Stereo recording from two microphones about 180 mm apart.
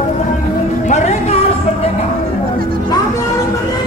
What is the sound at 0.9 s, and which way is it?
Music, 40° left (ahead or behind).